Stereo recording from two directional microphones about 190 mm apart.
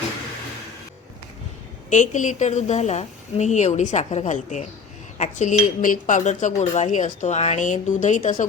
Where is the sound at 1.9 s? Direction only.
40° left (ahead or behind).